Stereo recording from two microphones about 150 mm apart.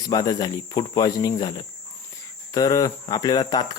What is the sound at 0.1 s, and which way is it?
Speech, 25° left (ahead or behind).